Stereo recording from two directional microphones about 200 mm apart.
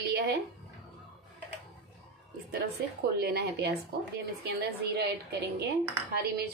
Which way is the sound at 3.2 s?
50° right (ahead or behind).